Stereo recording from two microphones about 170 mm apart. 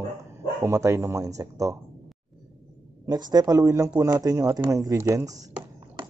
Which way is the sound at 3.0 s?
20° right (ahead or behind).